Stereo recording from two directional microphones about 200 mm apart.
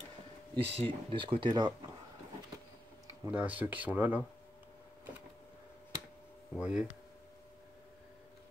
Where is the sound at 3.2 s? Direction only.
10° right (ahead or behind).